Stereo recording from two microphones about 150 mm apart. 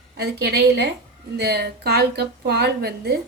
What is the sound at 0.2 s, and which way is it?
A woman's voice, 90° right.